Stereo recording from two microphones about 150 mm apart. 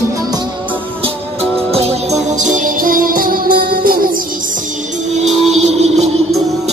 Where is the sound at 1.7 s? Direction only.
45° right (ahead or behind); by 4.0 s 75° right (ahead or behind).